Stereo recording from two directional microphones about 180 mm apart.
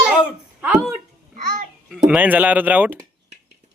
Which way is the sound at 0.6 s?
5° right (ahead or behind).